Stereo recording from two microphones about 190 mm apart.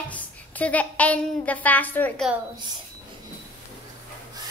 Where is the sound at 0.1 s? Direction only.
10° left (ahead or behind).